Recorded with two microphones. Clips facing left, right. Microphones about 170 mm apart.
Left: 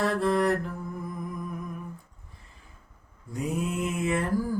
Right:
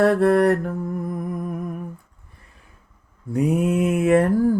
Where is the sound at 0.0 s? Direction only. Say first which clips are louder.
Right 9 dB; 60° right (ahead or behind).